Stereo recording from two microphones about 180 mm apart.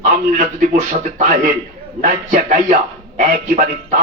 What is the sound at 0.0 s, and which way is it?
Speech, 45° right (ahead or behind).